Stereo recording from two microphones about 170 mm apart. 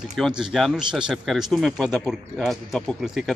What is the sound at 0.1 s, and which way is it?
Speech, 5° right (ahead or behind).